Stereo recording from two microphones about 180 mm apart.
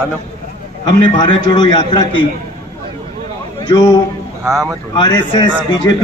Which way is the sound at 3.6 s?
20° left (ahead or behind).